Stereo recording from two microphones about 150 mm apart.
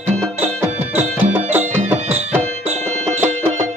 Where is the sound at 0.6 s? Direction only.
15° right (ahead or behind).